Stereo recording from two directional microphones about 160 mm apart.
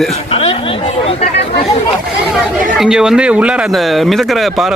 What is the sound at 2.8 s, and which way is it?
Speech, 5° right (ahead or behind).